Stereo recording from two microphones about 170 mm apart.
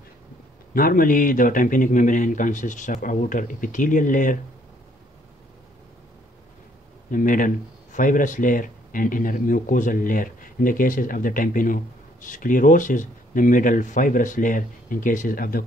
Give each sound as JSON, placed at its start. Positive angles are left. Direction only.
{"t": 0.7, "sound": "speech", "side_deg": 55}
{"t": 7.1, "sound": "speech", "side_deg": 50}